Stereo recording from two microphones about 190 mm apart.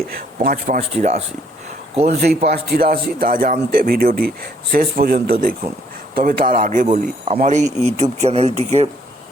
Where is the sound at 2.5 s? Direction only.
55° right (ahead or behind); by 8.9 s 35° right (ahead or behind).